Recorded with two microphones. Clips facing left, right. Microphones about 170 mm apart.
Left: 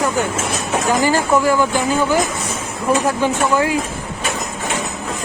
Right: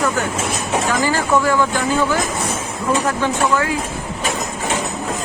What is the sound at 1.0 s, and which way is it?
Speech, 15° left (ahead or behind).